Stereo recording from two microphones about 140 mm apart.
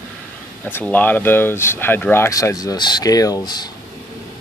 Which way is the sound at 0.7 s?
15° left (ahead or behind).